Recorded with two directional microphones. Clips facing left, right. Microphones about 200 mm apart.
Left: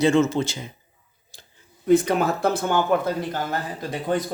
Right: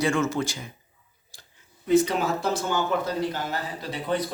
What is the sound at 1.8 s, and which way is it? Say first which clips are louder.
Speech: left 3 dB; 55° left (ahead or behind).